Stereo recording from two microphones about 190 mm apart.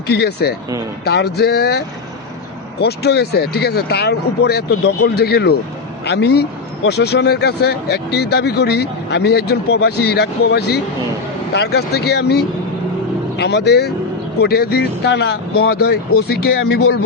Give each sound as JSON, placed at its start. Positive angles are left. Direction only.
{"t": 0.1, "sound": "speech", "side_deg": 60}
{"t": 2.8, "sound": "speech", "side_deg": 60}